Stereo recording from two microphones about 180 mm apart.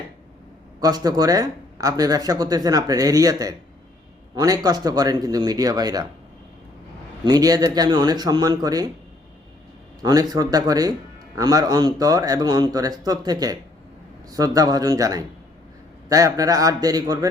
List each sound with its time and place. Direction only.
0.8 s speech: 20° right (ahead or behind)
7.3 s speech: 20° right (ahead or behind)
10.0 s speech: 20° right (ahead or behind)